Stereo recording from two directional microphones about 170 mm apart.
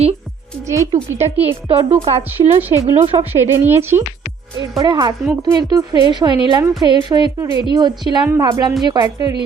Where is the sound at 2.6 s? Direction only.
10° right (ahead or behind).